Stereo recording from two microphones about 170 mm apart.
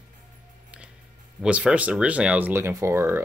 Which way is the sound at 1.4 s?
5° right (ahead or behind).